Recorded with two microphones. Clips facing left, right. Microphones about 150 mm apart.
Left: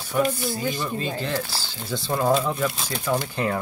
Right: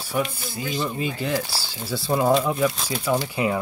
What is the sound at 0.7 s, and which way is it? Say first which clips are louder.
Speech: right 1 dB; 15° right (ahead or behind).